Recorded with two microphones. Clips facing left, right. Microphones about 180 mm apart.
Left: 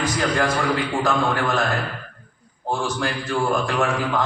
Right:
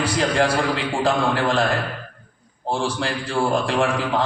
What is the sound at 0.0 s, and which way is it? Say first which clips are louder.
A man's voice: right 2 dB; 30° right (ahead or behind).